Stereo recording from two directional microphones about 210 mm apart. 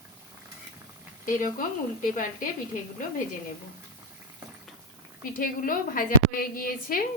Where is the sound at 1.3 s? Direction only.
40° left (ahead or behind).